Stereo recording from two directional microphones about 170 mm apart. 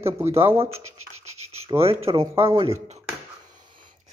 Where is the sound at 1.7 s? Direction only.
35° right (ahead or behind).